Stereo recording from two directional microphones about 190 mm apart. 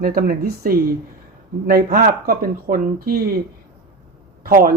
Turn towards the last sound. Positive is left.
turn(degrees=-50)  # may be behind; listen again after turning